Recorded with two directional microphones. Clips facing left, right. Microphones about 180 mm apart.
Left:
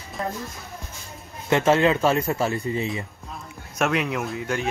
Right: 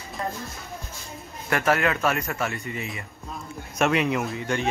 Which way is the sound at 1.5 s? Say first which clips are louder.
Left 5 dB; 25° left (ahead or behind).